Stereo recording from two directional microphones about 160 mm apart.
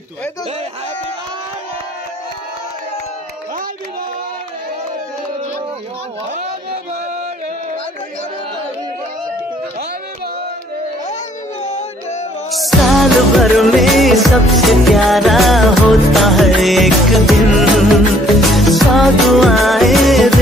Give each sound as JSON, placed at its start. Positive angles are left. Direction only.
{"t": 11.6, "sound": "music", "side_deg": 45}
{"t": 12.4, "sound": "music", "side_deg": 0}